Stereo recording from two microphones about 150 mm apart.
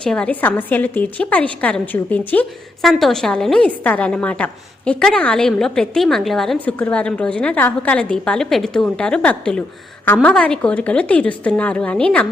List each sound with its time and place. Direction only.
0.0 s a woman's voice: 5° left (ahead or behind)